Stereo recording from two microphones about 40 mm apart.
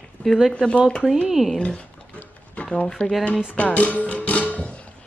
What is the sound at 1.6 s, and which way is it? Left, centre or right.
Speech, left.